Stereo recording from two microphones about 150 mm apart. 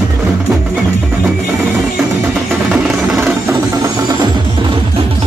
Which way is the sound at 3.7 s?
25° right (ahead or behind).